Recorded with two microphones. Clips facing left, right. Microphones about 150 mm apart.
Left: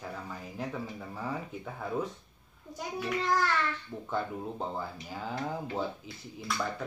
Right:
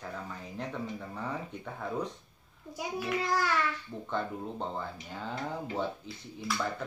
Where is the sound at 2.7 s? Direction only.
10° right (ahead or behind).